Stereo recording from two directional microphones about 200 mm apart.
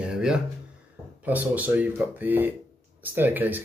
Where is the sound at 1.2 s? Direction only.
10° right (ahead or behind).